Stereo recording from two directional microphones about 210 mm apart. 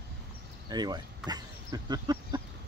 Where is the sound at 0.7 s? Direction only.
20° right (ahead or behind).